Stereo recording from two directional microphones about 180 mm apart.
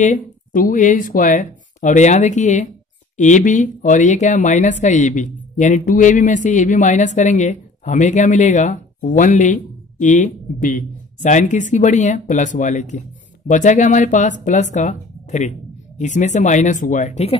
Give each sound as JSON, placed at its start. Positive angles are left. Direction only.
{"t": 0.0, "sound": "speech", "side_deg": 45}